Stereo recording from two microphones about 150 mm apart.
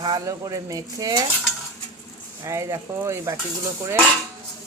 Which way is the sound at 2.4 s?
20° right (ahead or behind).